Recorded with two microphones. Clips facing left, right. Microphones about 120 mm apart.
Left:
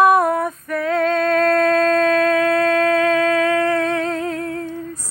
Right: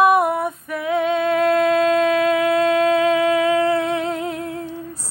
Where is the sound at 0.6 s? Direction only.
10° right (ahead or behind).